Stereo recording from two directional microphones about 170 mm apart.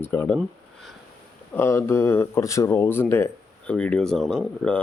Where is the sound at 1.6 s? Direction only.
15° left (ahead or behind).